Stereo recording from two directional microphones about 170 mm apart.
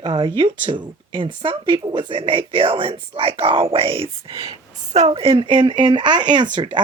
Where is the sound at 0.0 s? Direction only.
30° right (ahead or behind).